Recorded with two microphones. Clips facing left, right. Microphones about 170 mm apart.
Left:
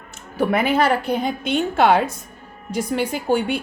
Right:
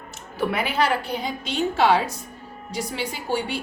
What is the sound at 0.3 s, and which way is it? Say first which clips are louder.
A woman's voice: left 5 dB; 50° left (ahead or behind).